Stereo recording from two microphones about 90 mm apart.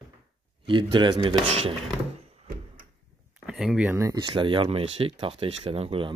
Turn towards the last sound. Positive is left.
turn(degrees=-85)